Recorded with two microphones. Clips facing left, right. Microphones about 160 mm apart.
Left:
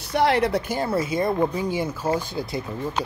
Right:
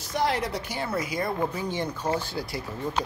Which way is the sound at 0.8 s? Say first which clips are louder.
Left 3 dB; 25° left (ahead or behind).